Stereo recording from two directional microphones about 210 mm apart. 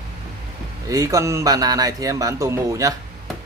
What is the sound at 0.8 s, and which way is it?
A man's voice, 15° right (ahead or behind).